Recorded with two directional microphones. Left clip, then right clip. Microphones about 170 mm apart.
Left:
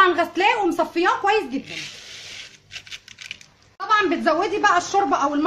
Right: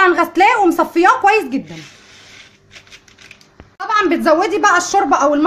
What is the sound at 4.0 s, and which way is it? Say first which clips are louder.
A woman's voice: right 10 dB; 50° right (ahead or behind).